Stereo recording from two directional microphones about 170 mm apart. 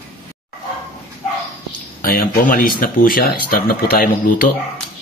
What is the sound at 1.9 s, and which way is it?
Speech, 60° left (ahead or behind).